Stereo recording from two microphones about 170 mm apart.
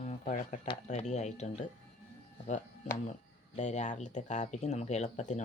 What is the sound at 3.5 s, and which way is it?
Speech, 45° left (ahead or behind).